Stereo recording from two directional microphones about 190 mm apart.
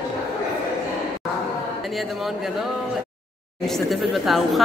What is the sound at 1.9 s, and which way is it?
Speech, centre (ahead or behind).